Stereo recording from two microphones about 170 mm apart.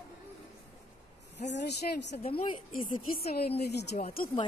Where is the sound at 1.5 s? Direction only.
85° left.